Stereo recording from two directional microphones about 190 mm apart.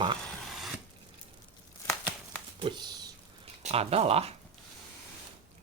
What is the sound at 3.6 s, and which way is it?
Speech, 30° right (ahead or behind).